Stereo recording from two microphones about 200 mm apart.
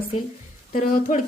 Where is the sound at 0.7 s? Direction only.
40° left (ahead or behind).